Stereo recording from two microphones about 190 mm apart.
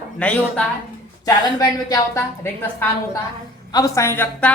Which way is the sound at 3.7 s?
15° left (ahead or behind).